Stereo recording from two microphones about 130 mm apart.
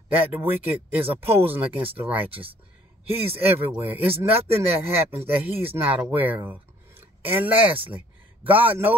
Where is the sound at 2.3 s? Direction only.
45° right (ahead or behind).